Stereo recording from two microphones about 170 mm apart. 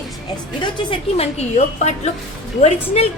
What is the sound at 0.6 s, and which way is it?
A woman's voice, 35° left (ahead or behind).